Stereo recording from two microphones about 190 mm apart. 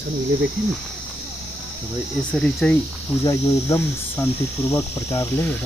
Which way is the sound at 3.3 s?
15° left (ahead or behind).